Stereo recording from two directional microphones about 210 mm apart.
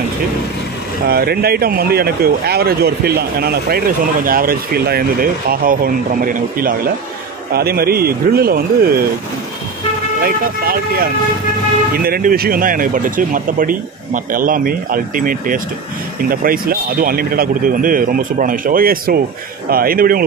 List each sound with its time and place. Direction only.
1.0 s speech: 50° right (ahead or behind)
10.2 s speech: 45° right (ahead or behind)